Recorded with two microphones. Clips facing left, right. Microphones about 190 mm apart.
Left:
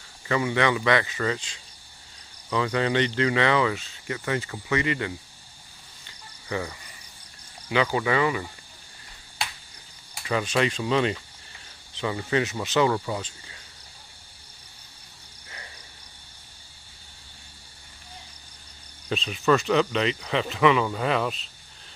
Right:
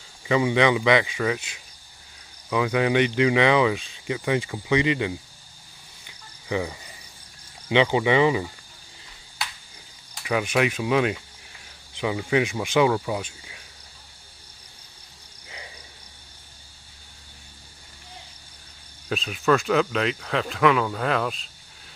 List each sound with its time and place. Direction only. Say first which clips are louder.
0.3 s speech: right 4 dB; 15° right (ahead or behind)
6.0 s cricket: right 4 dB; 15° right (ahead or behind)
7.6 s speech: right 4 dB; 20° right (ahead or behind)
10.2 s speech: right 2 dB; 10° right (ahead or behind)
19.0 s speech: right 1 dB; 5° right (ahead or behind)